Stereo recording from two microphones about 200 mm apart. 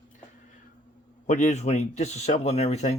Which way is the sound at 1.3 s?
35° left (ahead or behind).